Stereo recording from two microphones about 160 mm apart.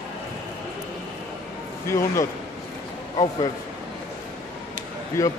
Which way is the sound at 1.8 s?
20° left (ahead or behind).